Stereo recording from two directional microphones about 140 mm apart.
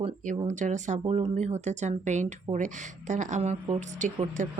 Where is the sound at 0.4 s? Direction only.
60° right (ahead or behind).